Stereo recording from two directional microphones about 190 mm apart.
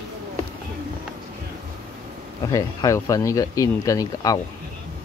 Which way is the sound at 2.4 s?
20° left (ahead or behind).